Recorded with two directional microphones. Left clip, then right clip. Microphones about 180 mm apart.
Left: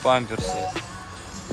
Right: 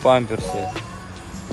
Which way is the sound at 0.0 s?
15° left (ahead or behind).